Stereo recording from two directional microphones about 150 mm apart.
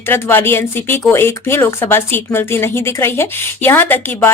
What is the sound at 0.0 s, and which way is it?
Speech, 15° left (ahead or behind).